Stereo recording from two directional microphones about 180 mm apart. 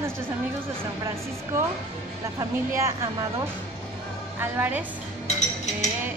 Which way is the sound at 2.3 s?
15° right (ahead or behind).